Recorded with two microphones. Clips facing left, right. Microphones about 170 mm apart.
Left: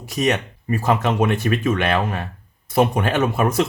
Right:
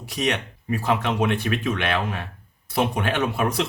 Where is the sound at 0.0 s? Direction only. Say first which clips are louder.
Left 5 dB; 45° left (ahead or behind).